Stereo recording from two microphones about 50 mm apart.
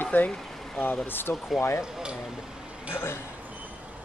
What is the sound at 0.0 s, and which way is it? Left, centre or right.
Vehicle, left.